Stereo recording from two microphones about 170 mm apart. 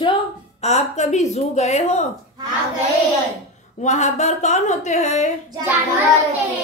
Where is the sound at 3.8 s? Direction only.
45° left (ahead or behind).